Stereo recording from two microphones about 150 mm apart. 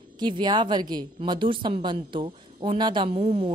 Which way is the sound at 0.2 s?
30° right (ahead or behind).